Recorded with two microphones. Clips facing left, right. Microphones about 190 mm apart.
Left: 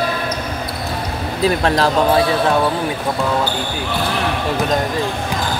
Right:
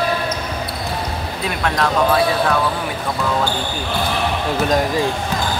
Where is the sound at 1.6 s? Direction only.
35° left (ahead or behind).